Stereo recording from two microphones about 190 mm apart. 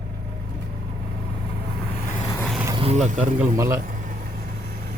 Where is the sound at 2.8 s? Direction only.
35° right (ahead or behind).